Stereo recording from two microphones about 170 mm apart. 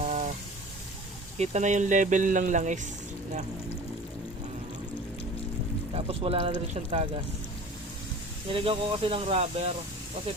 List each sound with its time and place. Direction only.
0.0 s a sound: 40° right (ahead or behind)
1.4 s speech: 45° right (ahead or behind)
5.9 s speech: 35° right (ahead or behind)
8.4 s speech: 30° right (ahead or behind)